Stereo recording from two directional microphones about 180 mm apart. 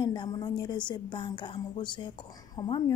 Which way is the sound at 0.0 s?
25° left (ahead or behind).